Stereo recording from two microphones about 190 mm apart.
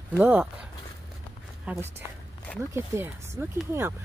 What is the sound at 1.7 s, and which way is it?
Speech, 10° right (ahead or behind).